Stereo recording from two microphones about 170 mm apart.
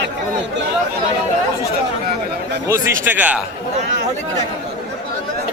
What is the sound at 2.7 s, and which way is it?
Speech, 15° right (ahead or behind).